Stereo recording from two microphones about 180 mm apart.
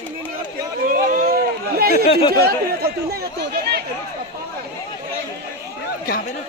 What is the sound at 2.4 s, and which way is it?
Speech, 60° right (ahead or behind).